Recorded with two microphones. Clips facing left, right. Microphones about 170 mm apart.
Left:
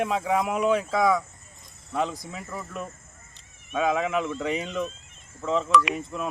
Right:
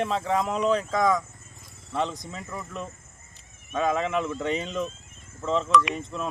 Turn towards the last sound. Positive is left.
turn(degrees=5)  # may be behind; listen again after turning